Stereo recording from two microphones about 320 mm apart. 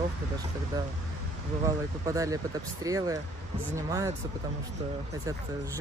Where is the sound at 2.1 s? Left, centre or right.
Centre.